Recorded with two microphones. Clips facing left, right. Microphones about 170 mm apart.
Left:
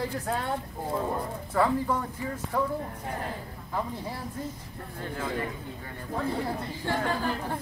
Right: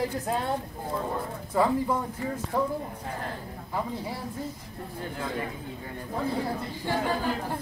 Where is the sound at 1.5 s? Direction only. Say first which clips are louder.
Right 1 dB; 15° right (ahead or behind).